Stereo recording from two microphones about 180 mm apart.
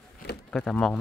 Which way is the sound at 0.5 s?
Centre (ahead or behind).